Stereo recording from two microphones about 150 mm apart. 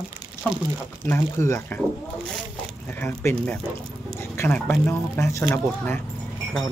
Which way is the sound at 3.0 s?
15° left (ahead or behind).